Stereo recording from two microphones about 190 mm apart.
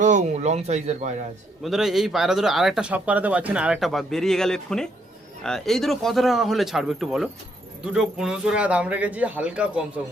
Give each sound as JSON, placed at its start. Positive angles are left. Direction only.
{"t": 0.0, "sound": "speech", "side_deg": -40}
{"t": 1.6, "sound": "speech", "side_deg": 0}